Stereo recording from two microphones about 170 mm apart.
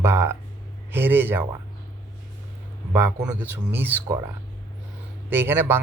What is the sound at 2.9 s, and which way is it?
A man's voice, 10° right (ahead or behind).